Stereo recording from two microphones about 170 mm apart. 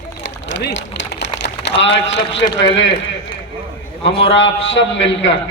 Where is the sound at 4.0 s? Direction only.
30° left (ahead or behind).